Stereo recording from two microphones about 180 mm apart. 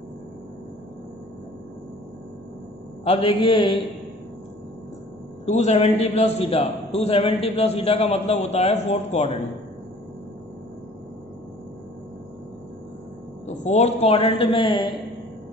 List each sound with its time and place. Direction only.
3.0 s a man's voice: 30° left (ahead or behind)
5.5 s a man's voice: 40° left (ahead or behind)
13.5 s a man's voice: 40° left (ahead or behind)